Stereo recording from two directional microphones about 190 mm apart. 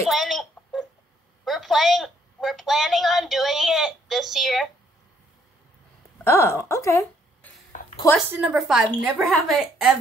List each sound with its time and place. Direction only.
0.1 s a sound: centre (ahead or behind)
1.4 s a woman's voice: centre (ahead or behind)
6.2 s a woman's voice: 15° left (ahead or behind)
8.3 s a woman's voice: 5° right (ahead or behind)